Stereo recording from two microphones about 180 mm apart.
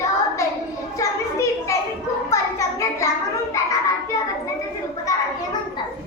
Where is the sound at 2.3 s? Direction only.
15° left (ahead or behind).